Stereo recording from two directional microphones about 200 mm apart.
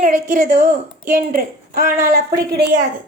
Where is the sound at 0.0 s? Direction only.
40° right (ahead or behind).